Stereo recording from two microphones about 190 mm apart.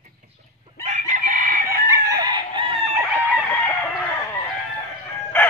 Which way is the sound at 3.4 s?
5° left (ahead or behind).